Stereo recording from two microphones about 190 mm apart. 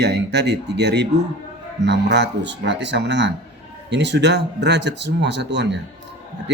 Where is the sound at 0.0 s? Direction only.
60° right (ahead or behind).